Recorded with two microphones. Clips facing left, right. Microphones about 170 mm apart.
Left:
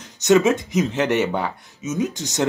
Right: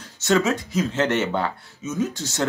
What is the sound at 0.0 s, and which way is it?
Speech, 20° left (ahead or behind).